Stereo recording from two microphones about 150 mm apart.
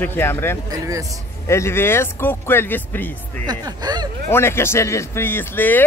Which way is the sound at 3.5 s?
25° right (ahead or behind).